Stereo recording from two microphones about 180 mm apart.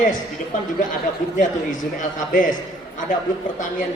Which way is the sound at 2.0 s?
45° left (ahead or behind).